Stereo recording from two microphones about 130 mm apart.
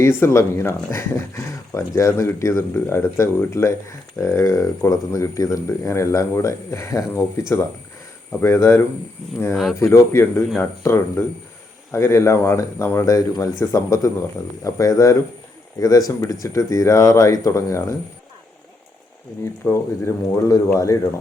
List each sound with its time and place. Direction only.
0.0 s speech: 20° left (ahead or behind)
19.6 s speech: 20° left (ahead or behind)